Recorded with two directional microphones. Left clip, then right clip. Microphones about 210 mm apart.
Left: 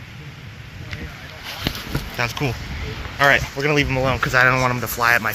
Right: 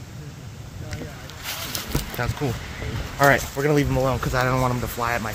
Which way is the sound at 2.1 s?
5° right (ahead or behind).